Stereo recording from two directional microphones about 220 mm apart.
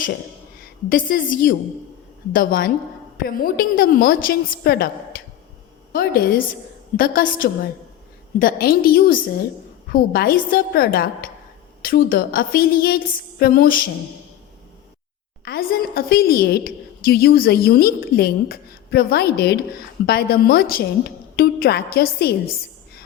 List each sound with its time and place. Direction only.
0.9 s a woman's voice: 40° left (ahead or behind)
5.9 s a woman's voice: 40° left (ahead or behind)
15.4 s a woman's voice: 45° left (ahead or behind)